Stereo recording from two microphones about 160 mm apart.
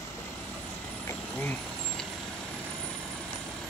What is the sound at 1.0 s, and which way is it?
Vehicle, 10° left (ahead or behind).